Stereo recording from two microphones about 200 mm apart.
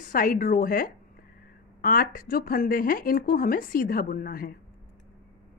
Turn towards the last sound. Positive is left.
turn(degrees=45)  # may be behind; listen again after turning